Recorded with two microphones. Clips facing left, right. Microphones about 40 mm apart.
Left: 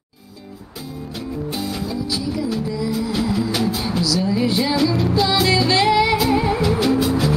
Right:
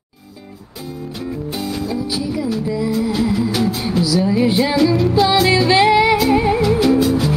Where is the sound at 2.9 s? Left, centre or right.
Centre.